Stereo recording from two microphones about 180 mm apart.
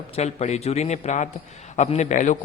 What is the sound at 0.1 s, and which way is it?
A man's voice, 35° left (ahead or behind).